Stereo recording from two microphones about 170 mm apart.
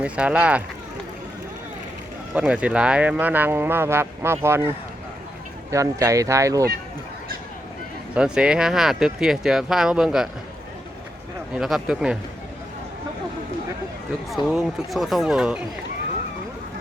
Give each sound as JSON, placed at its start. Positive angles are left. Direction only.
{"t": 0.0, "sound": "speech", "side_deg": -5}
{"t": 2.3, "sound": "speech", "side_deg": -5}
{"t": 5.7, "sound": "speech", "side_deg": -20}
{"t": 8.1, "sound": "speech", "side_deg": -5}
{"t": 11.5, "sound": "speech", "side_deg": -5}
{"t": 14.3, "sound": "speech", "side_deg": 0}